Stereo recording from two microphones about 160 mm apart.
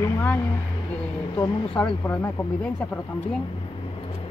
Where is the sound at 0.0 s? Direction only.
10° left (ahead or behind).